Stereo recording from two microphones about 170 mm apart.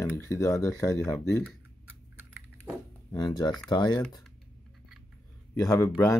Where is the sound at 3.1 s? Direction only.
25° left (ahead or behind).